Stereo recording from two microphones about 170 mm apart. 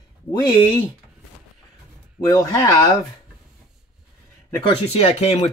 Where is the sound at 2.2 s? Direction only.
20° left (ahead or behind).